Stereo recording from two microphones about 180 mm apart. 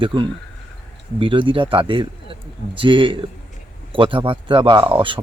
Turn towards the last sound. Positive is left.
turn(degrees=-30)  # may be behind; listen again after turning